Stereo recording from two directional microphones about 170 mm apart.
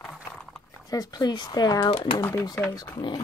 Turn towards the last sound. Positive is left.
turn(degrees=25)  # may be behind; listen again after turning